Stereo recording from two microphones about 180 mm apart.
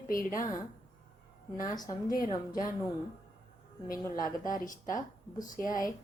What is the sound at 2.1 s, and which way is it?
Speech, 50° left (ahead or behind).